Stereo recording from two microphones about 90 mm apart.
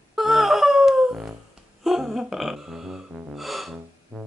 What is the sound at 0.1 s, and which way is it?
Wail, centre (ahead or behind).